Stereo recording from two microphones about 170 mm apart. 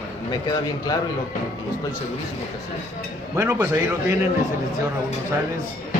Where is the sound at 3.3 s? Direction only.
20° right (ahead or behind).